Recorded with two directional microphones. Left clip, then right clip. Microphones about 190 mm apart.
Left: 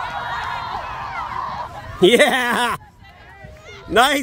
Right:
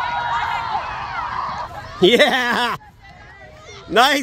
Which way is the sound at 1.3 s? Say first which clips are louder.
Right 1 dB; 20° left (ahead or behind).